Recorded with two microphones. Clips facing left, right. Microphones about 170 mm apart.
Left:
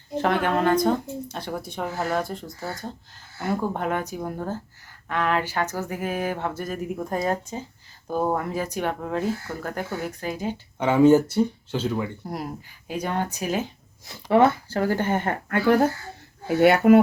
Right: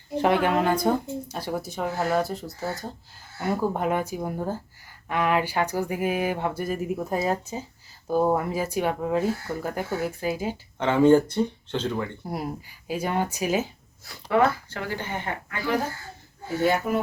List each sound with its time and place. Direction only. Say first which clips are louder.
0.2 s speech: right 1 dB; 10° right (ahead or behind)
10.8 s speech: left 1 dB; 10° left (ahead or behind)
12.9 s speech: right 1 dB; 10° right (ahead or behind)
14.1 s speech: left 4 dB; 25° left (ahead or behind)
14.8 s speech: left 8 dB; 50° left (ahead or behind)
16.6 s speech: left 8 dB; 75° left (ahead or behind)